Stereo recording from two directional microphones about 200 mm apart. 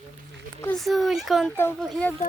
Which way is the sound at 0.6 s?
5° left (ahead or behind).